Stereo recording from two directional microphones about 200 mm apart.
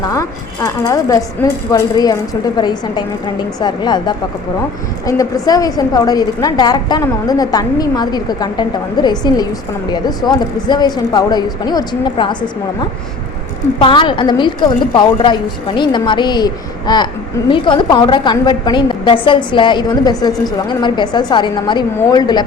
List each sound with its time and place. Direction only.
0.0 s a woman's voice: 15° left (ahead or behind)
13.7 s a woman's voice: 25° left (ahead or behind)